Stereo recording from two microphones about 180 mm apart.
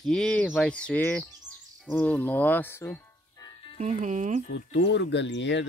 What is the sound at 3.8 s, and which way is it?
Speech, 40° right (ahead or behind).